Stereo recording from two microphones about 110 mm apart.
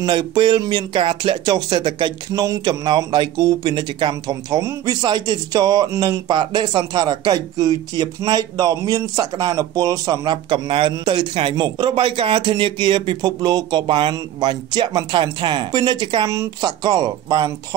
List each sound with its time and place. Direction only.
0.0 s speech: 45° right (ahead or behind)
2.4 s speech: 35° right (ahead or behind)